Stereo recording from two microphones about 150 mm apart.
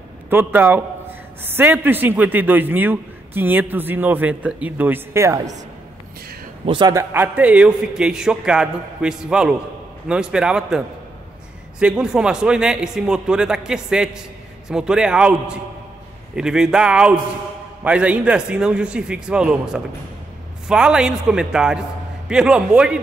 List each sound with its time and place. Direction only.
0.3 s a man's voice: 15° right (ahead or behind)
6.6 s a man's voice: 35° right (ahead or behind)
6.9 s a man's voice: 15° right (ahead or behind)
11.8 s a man's voice: 5° right (ahead or behind)